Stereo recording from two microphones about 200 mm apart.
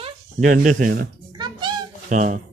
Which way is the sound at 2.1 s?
40° right (ahead or behind).